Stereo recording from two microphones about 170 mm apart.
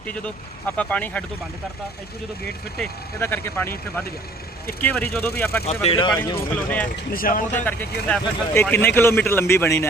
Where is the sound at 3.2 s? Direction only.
15° left (ahead or behind).